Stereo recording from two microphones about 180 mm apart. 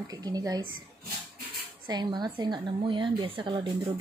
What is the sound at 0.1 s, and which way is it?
Speech, 20° right (ahead or behind).